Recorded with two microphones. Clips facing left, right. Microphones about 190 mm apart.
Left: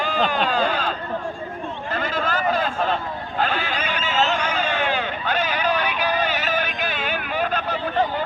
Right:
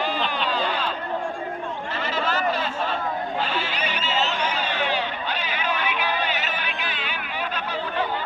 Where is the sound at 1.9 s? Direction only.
50° left (ahead or behind).